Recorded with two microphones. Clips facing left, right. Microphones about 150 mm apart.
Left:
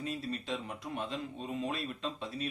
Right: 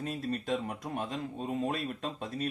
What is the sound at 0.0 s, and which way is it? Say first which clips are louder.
Speech: right 3 dB; 45° right (ahead or behind).